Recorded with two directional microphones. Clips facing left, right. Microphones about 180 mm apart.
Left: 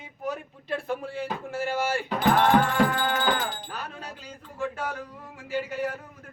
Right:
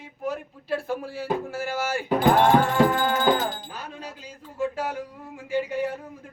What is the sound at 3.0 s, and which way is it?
Music, 45° right (ahead or behind).